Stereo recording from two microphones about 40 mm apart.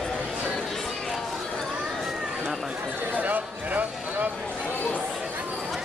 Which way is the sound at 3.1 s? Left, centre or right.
Right.